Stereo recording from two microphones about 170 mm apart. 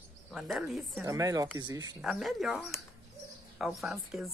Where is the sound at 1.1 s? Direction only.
20° right (ahead or behind).